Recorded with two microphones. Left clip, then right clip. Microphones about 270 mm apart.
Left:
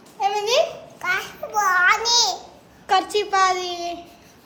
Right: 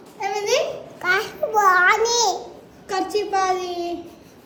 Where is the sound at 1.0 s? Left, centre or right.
Centre.